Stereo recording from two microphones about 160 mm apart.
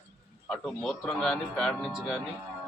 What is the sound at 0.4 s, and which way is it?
A man's voice, 5° left (ahead or behind).